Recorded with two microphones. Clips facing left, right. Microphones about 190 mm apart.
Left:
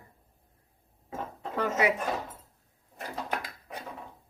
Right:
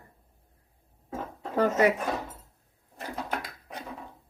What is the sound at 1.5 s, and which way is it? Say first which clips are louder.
Speech: right 4 dB; 40° right (ahead or behind).